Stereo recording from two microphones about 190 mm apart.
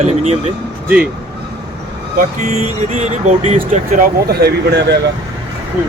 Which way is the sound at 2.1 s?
35° right (ahead or behind).